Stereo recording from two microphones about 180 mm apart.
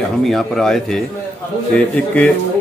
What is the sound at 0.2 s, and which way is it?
A man's voice, centre (ahead or behind).